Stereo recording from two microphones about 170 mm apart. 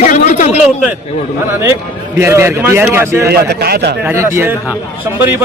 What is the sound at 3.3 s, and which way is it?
Speech, 70° right (ahead or behind).